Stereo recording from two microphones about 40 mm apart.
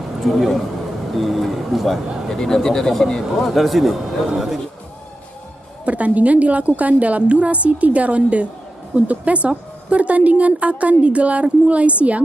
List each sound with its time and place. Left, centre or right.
0.2 s a man's voice: centre
2.2 s speech: centre
5.9 s a woman's voice: right